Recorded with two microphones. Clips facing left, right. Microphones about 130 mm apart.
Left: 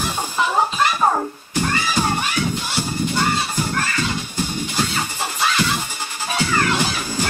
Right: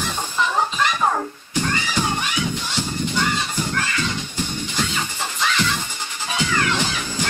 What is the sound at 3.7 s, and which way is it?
Music, 40° left (ahead or behind).